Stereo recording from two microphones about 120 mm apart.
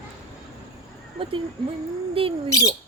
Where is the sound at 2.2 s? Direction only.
50° right (ahead or behind).